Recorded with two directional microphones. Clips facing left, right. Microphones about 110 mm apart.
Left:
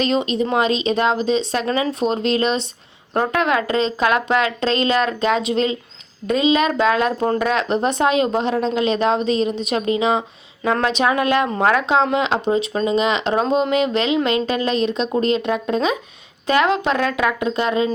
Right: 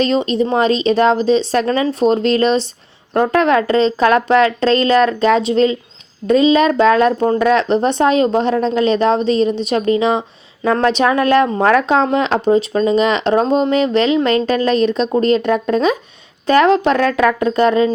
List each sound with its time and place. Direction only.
0.0 s speech: 35° right (ahead or behind)